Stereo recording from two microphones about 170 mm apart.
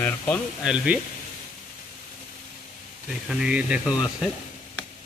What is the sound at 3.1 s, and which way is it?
Speech, 5° right (ahead or behind).